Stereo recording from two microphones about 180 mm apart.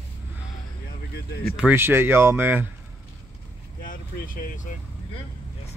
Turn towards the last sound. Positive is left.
turn(degrees=45)  # may be behind; listen again after turning